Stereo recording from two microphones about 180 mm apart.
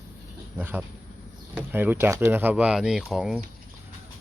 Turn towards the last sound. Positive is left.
turn(degrees=-5)  # may be behind; listen again after turning